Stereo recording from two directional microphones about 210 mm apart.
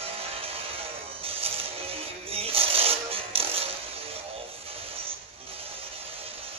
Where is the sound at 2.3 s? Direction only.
25° right (ahead or behind).